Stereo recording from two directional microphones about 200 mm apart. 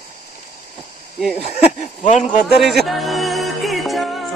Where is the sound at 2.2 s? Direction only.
Centre (ahead or behind).